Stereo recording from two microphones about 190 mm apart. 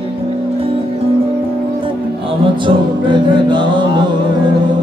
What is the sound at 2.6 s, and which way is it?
Music, 25° right (ahead or behind).